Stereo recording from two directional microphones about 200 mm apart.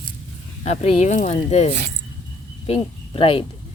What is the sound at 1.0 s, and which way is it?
Speech, 35° left (ahead or behind).